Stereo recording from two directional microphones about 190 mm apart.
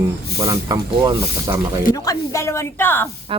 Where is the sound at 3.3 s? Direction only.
30° right (ahead or behind).